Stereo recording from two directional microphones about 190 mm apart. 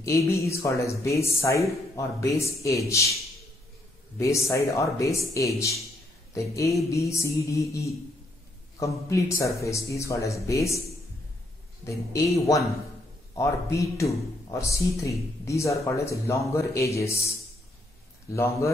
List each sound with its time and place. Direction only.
0.0 s speech: 15° left (ahead or behind)
4.2 s speech: 15° left (ahead or behind)
11.8 s speech: 15° left (ahead or behind)
18.3 s speech: 15° left (ahead or behind)